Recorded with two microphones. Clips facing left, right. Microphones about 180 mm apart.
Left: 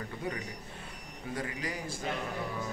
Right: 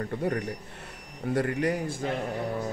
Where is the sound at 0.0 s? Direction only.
60° right (ahead or behind).